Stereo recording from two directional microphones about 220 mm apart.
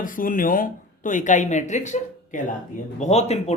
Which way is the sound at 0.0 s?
40° left (ahead or behind).